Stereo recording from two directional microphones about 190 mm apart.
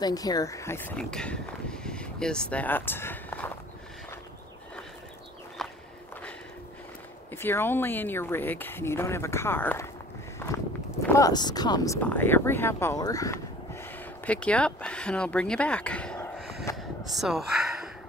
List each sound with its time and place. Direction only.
0.0 s speech: 20° left (ahead or behind)
5.6 s walk: centre (ahead or behind)
7.3 s speech: 10° left (ahead or behind)
11.1 s speech: 20° left (ahead or behind)
16.7 s gasp: centre (ahead or behind)